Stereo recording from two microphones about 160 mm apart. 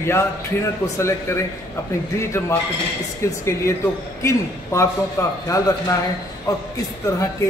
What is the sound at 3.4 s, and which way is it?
A man's voice, 15° left (ahead or behind).